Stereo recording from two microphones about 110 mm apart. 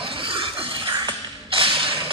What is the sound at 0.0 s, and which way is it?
Music, 55° right (ahead or behind).